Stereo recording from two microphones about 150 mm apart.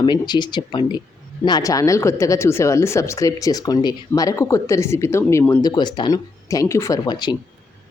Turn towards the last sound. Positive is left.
turn(degrees=30)  # may be behind; listen again after turning